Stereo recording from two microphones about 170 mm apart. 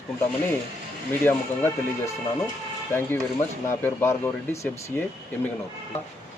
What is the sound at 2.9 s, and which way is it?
Speech, 10° left (ahead or behind).